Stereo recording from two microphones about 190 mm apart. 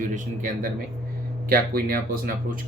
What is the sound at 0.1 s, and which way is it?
Speech, 45° right (ahead or behind).